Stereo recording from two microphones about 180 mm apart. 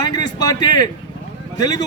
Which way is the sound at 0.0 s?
20° left (ahead or behind).